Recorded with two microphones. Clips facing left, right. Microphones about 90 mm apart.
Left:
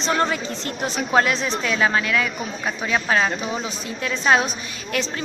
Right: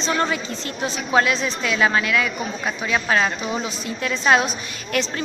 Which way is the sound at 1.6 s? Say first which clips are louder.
Right 2 dB; 30° left (ahead or behind).